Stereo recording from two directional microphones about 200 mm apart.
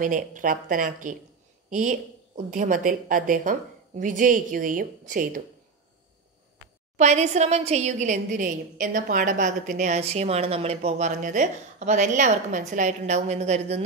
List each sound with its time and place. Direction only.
0.0 s a woman's voice: 40° right (ahead or behind)
7.0 s a woman's voice: 35° right (ahead or behind)